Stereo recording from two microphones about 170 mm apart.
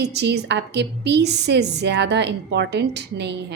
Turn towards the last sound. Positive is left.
turn(degrees=-85)